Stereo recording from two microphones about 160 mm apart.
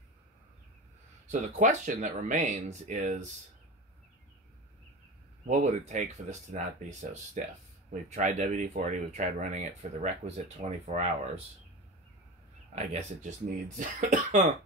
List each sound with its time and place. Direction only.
1.3 s speech: 50° right (ahead or behind)
5.5 s speech: 50° right (ahead or behind)
12.7 s speech: 50° right (ahead or behind)